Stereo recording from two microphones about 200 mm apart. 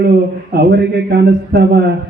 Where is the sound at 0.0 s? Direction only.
55° right (ahead or behind).